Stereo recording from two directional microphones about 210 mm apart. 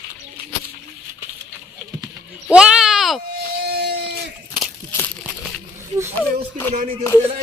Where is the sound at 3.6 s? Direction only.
50° right (ahead or behind).